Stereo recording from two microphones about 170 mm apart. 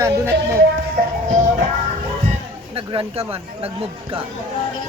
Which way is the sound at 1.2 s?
50° right (ahead or behind).